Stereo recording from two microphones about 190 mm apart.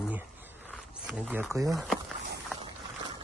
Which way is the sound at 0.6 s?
Centre (ahead or behind).